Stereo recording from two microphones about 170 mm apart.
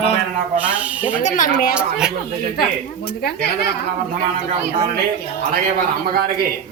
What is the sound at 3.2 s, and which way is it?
Speech, 75° left (ahead or behind).